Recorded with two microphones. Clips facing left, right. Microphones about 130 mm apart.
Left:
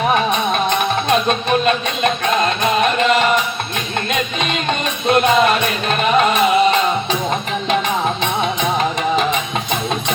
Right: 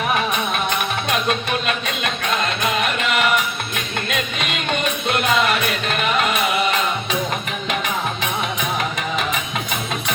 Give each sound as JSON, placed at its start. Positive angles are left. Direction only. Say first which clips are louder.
{"t": 0.1, "sound": "music", "louder": "left 5 dB", "side_deg": 30}
{"t": 5.0, "sound": "music", "louder": "left 7 dB", "side_deg": 35}